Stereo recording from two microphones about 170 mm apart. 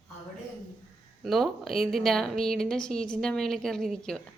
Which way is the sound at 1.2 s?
Centre (ahead or behind).